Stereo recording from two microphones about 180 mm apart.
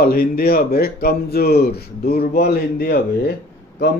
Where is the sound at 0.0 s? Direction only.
60° left (ahead or behind).